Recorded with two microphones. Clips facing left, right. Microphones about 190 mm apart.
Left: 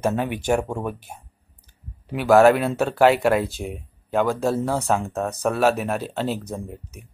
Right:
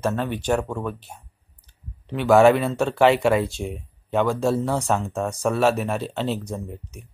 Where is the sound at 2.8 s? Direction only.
5° left (ahead or behind).